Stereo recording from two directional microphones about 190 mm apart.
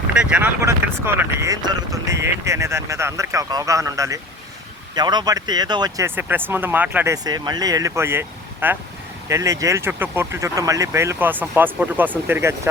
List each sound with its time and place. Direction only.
0.1 s speech: 5° right (ahead or behind)